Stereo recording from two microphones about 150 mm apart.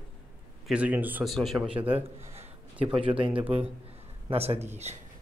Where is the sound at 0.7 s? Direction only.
10° right (ahead or behind).